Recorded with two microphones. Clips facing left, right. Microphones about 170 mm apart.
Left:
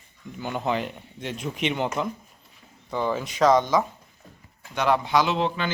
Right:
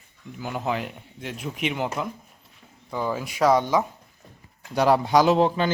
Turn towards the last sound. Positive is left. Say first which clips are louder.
# right 5 dB
turn(degrees=-40)  # may be behind; listen again after turning